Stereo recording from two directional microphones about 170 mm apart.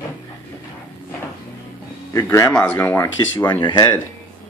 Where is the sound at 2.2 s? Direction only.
20° left (ahead or behind).